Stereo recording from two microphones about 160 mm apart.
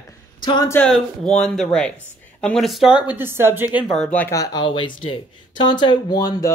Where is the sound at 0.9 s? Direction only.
5° left (ahead or behind).